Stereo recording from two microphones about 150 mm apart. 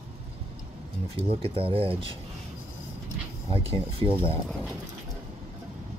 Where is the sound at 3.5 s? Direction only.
40° right (ahead or behind).